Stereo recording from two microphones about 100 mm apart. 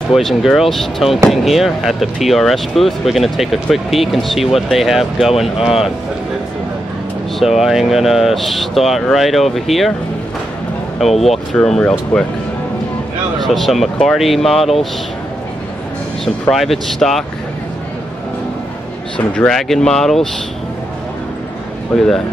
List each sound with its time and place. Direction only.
0.1 s speech: centre (ahead or behind)
7.3 s speech: 5° right (ahead or behind)
11.1 s speech: 5° left (ahead or behind)
13.4 s speech: centre (ahead or behind)
16.5 s speech: centre (ahead or behind)
19.1 s speech: 10° left (ahead or behind)
21.9 s speech: 5° left (ahead or behind)